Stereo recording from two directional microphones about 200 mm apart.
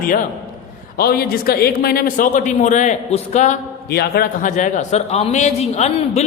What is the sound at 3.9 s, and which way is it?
A man's voice, 50° left (ahead or behind).